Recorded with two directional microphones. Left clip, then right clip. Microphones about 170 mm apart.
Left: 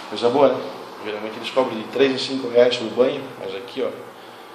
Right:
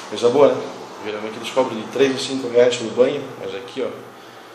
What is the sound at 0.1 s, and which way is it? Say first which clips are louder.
Speech: right 2 dB; centre (ahead or behind).